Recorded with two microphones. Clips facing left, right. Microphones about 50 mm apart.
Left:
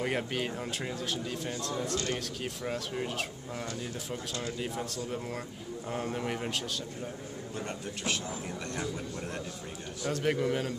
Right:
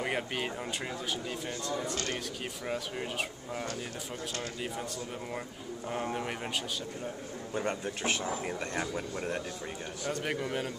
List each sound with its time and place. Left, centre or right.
0.0 s speech: centre
7.5 s speech: right
10.0 s a man's voice: centre